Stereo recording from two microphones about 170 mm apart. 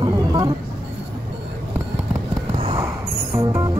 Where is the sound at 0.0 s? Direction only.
25° right (ahead or behind).